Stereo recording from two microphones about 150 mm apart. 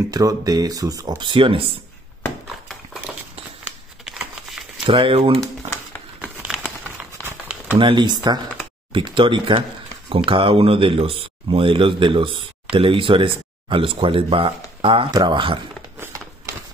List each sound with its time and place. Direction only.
0.1 s speech: 25° right (ahead or behind)
3.6 s a sound: 5° right (ahead or behind)
4.8 s speech: 35° right (ahead or behind)
6.2 s crumpling: 5° right (ahead or behind)
7.2 s a sound: 15° right (ahead or behind)
7.8 s speech: 30° right (ahead or behind)